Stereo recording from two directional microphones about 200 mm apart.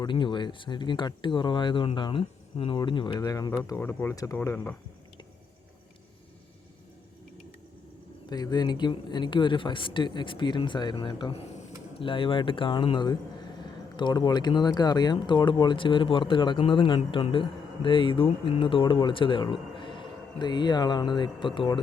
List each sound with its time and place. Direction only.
0.0 s speech: 25° left (ahead or behind); by 4.7 s 10° left (ahead or behind)
8.3 s speech: 20° left (ahead or behind)